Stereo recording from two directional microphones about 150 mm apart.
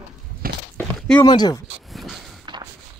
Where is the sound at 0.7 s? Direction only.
5° left (ahead or behind).